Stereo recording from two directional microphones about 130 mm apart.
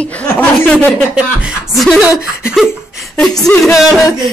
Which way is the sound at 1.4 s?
Centre (ahead or behind).